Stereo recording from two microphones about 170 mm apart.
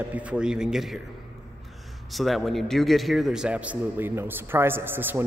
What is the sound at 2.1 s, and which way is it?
A man's voice, centre (ahead or behind).